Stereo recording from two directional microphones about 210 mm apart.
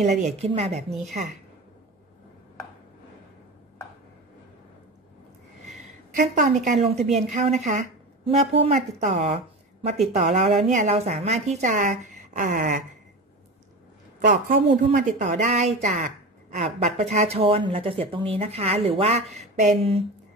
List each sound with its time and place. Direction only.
0.0 s a woman's voice: 35° right (ahead or behind)
5.7 s a woman's voice: 35° right (ahead or behind)
14.2 s a woman's voice: 40° right (ahead or behind)